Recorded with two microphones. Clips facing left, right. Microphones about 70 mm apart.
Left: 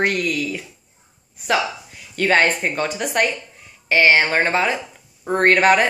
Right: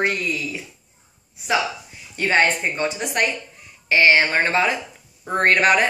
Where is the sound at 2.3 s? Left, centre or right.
Left.